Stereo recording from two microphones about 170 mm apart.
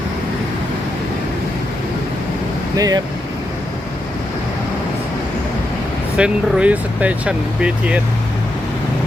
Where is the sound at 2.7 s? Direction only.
20° right (ahead or behind).